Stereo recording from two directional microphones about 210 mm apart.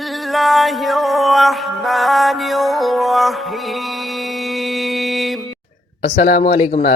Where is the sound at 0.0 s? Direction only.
Centre (ahead or behind).